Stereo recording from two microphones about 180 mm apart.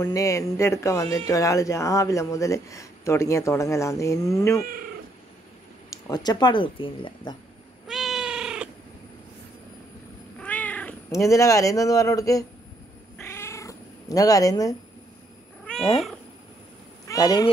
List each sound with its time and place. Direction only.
0.0 s speech: 20° left (ahead or behind)
5.9 s speech: 20° left (ahead or behind)
7.9 s cat: centre (ahead or behind)
10.4 s cat: 10° left (ahead or behind)
11.1 s speech: 20° left (ahead or behind)
13.2 s cat: 15° left (ahead or behind)
17.1 s speech: 20° left (ahead or behind)